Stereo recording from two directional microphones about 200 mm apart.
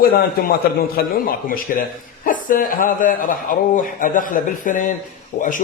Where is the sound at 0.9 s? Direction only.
45° left (ahead or behind).